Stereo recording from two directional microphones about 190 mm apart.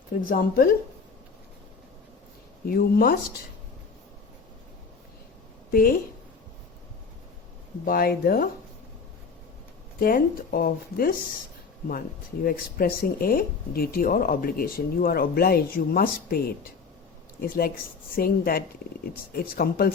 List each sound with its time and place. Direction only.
0.3 s speech: 50° left (ahead or behind)
2.6 s speech: 50° left (ahead or behind)
5.7 s speech: 50° left (ahead or behind)
7.9 s speech: 50° left (ahead or behind)
10.0 s speech: 50° left (ahead or behind)